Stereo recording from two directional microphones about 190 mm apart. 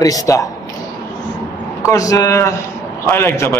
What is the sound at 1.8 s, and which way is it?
A man's voice, 15° left (ahead or behind).